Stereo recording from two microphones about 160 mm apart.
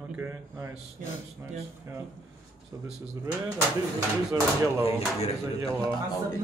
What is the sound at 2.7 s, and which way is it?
Speech, 15° right (ahead or behind).